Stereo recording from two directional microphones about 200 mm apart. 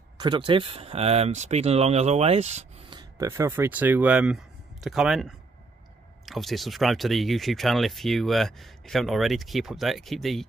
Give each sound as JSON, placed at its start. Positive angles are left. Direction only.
{"t": 0.2, "sound": "speech", "side_deg": -20}
{"t": 3.0, "sound": "speech", "side_deg": -15}